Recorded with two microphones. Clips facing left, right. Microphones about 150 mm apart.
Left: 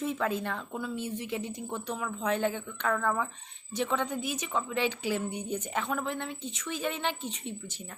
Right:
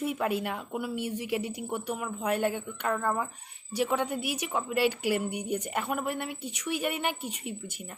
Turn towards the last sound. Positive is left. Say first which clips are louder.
# right 1 dB
turn(degrees=-10)  # may be behind; listen again after turning